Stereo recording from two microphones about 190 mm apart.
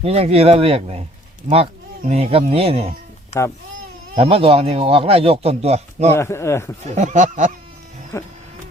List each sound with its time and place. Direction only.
0.0 s speech: 30° right (ahead or behind)
3.3 s speech: 35° left (ahead or behind)
4.1 s speech: 30° right (ahead or behind)
6.1 s speech: 15° left (ahead or behind)
6.8 s speech: 40° right (ahead or behind)
8.1 s speech: 15° left (ahead or behind)